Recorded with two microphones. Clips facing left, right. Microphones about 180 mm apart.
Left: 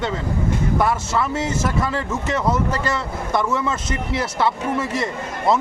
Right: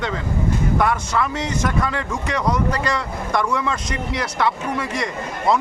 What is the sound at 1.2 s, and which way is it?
Speech, 5° left (ahead or behind).